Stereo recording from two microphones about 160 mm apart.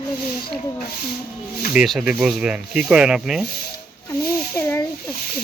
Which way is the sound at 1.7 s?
5° right (ahead or behind).